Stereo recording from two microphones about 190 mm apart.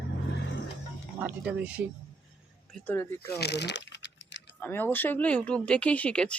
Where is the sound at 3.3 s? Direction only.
60° left (ahead or behind).